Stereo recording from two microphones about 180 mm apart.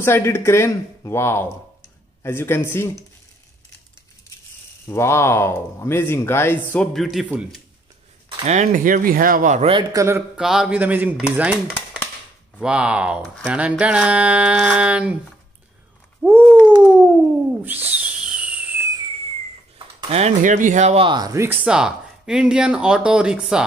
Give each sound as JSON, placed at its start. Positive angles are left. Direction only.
{"t": 0.0, "sound": "speech", "side_deg": 15}
{"t": 4.8, "sound": "speech", "side_deg": 15}
{"t": 8.3, "sound": "speech", "side_deg": -35}
{"t": 9.7, "sound": "a man's voice", "side_deg": -25}
{"t": 10.0, "sound": "speech", "side_deg": -15}
{"t": 10.4, "sound": "speech", "side_deg": -5}
{"t": 11.3, "sound": "stir", "side_deg": -5}
{"t": 12.5, "sound": "speech", "side_deg": -5}
{"t": 16.2, "sound": "a sound", "side_deg": -10}
{"t": 17.6, "sound": "a sound", "side_deg": -10}
{"t": 20.0, "sound": "speech", "side_deg": -35}